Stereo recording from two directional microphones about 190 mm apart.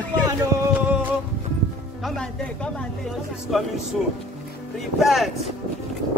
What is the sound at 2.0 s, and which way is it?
Speech, 5° left (ahead or behind).